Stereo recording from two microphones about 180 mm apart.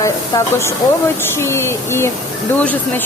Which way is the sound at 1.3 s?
15° left (ahead or behind).